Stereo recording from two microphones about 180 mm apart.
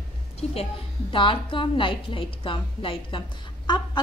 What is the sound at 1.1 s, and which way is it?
A woman's voice, 30° left (ahead or behind).